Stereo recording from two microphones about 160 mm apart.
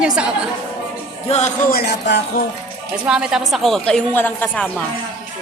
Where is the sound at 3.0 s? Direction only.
5° right (ahead or behind); by 4.6 s 10° left (ahead or behind).